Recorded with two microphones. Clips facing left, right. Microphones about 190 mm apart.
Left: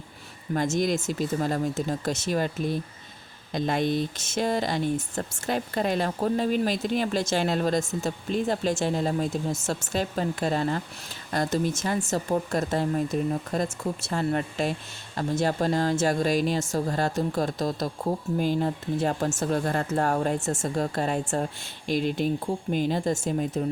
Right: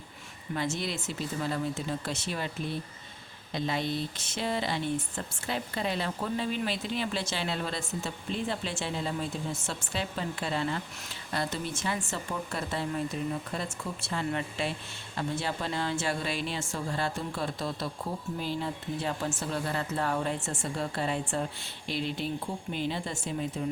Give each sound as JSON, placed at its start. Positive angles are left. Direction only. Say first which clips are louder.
{"t": 0.5, "sound": "speech", "louder": "left 8 dB", "side_deg": 45}